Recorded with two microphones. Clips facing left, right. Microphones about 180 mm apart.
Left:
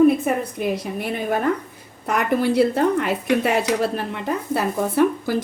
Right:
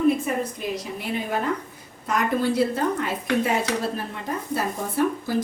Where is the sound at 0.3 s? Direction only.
55° left (ahead or behind).